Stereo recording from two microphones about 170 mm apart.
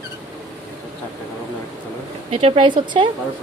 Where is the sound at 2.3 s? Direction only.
35° right (ahead or behind).